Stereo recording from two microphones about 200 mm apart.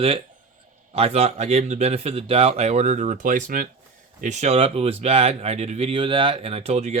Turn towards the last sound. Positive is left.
turn(degrees=-30)  # may be behind; listen again after turning